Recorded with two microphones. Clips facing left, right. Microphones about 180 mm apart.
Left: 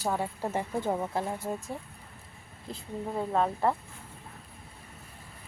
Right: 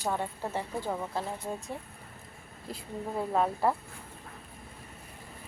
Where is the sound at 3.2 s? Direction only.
5° right (ahead or behind).